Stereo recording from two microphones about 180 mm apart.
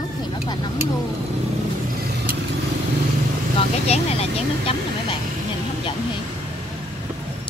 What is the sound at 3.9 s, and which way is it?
Speech, 35° left (ahead or behind).